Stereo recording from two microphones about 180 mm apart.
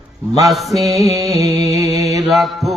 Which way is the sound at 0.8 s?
20° right (ahead or behind).